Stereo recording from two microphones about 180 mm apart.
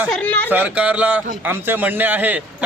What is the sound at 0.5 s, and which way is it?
A man's voice, 10° right (ahead or behind).